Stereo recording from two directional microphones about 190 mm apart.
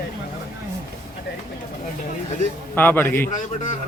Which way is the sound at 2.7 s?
10° left (ahead or behind).